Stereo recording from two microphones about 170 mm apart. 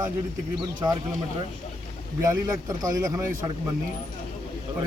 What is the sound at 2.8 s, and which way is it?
Speech, 20° right (ahead or behind).